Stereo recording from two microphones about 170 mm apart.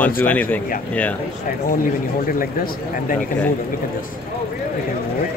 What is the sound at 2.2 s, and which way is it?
Speech, 55° left (ahead or behind).